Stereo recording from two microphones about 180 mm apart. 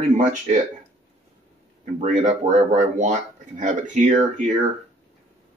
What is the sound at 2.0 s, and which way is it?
Speech, 40° right (ahead or behind).